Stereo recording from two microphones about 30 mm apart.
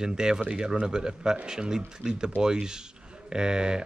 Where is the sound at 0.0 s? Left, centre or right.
Right.